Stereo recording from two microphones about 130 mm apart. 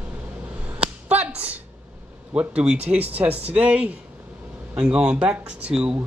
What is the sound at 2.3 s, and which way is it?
Speech, 10° right (ahead or behind).